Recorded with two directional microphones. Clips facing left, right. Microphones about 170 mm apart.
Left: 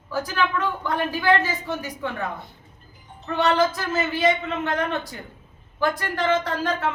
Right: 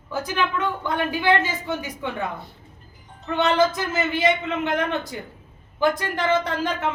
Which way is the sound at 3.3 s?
20° right (ahead or behind).